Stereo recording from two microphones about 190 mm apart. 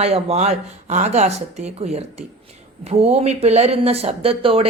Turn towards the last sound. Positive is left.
turn(degrees=-30)  # may be behind; listen again after turning